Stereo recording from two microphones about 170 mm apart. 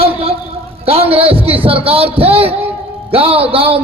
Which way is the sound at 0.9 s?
35° right (ahead or behind).